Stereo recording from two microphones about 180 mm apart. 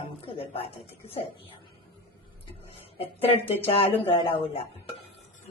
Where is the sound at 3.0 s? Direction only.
35° left (ahead or behind).